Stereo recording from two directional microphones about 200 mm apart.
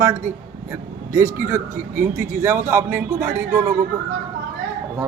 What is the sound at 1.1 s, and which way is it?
A man's voice, 15° right (ahead or behind).